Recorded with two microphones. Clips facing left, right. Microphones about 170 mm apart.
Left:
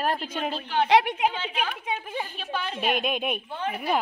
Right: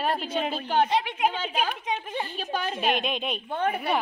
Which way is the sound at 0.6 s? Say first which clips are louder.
Left 4 dB; 40° right (ahead or behind).